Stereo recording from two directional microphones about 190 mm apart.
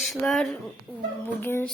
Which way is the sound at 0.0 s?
Centre (ahead or behind).